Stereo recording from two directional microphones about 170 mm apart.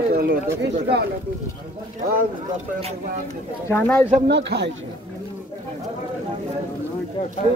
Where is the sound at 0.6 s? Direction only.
75° right (ahead or behind).